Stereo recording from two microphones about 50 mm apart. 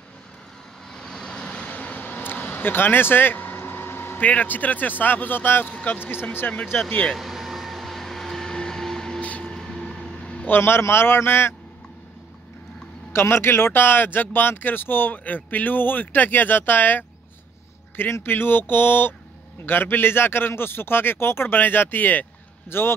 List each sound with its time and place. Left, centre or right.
0.9 s vehicle: centre; by 4.2 s left
4.2 s speech: left
7.2 s vehicle: centre
9.4 s a sound: centre
10.6 s a man's voice: left
13.1 s speech: left
18.2 s a man's voice: left
22.7 s a man's voice: left